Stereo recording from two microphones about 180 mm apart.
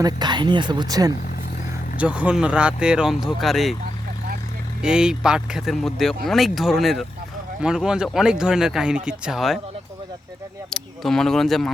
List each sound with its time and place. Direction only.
0.0 s speech: 25° right (ahead or behind)
2.0 s speech: 5° right (ahead or behind)
4.8 s speech: 5° right (ahead or behind)
10.7 s speech: centre (ahead or behind)